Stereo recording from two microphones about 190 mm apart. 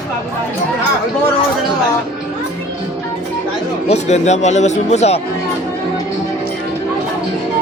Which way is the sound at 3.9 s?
35° left (ahead or behind).